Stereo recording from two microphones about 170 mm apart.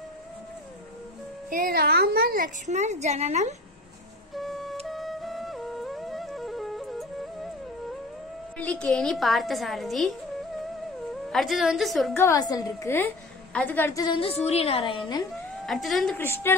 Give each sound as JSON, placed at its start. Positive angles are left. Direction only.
{"t": 1.5, "sound": "a woman's voice", "side_deg": -60}
{"t": 4.4, "sound": "flute", "side_deg": 0}
{"t": 4.8, "sound": "music", "side_deg": 0}
{"t": 8.5, "sound": "a woman's voice", "side_deg": 10}
{"t": 11.2, "sound": "a woman's voice", "side_deg": 0}
{"t": 12.2, "sound": "a woman's voice", "side_deg": 20}
{"t": 14.0, "sound": "a woman's voice", "side_deg": 30}
{"t": 15.6, "sound": "a woman's voice", "side_deg": 0}
{"t": 16.2, "sound": "a woman's voice", "side_deg": 15}